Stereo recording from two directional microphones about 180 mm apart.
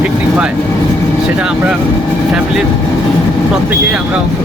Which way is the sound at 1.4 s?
5° right (ahead or behind).